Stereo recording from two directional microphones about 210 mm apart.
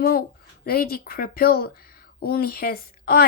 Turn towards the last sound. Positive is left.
turn(degrees=45)  # may be behind; listen again after turning